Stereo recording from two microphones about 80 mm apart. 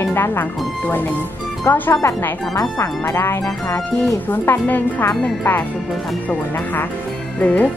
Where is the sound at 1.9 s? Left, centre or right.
Left.